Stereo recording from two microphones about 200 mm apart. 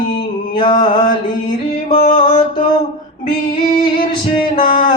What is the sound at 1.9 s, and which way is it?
Music, 40° left (ahead or behind).